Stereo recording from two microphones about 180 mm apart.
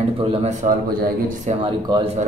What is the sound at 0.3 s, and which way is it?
Speech, 40° right (ahead or behind).